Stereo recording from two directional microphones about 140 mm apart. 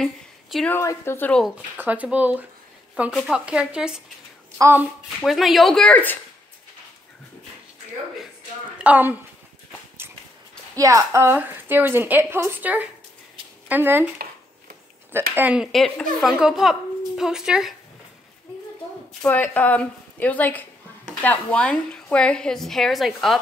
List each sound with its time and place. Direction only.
0.0 s a sound: centre (ahead or behind)
0.7 s a woman's voice: 20° left (ahead or behind)
1.8 s a woman's voice: 10° right (ahead or behind)
4.6 s speech: 20° right (ahead or behind)
5.2 s speech: centre (ahead or behind)
8.7 s a woman's voice: 10° right (ahead or behind)
10.8 s a woman's voice: 25° right (ahead or behind)
15.3 s speech: 10° right (ahead or behind)
19.2 s a woman's voice: 10° left (ahead or behind)